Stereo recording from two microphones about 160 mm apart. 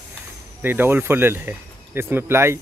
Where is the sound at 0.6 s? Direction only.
10° right (ahead or behind).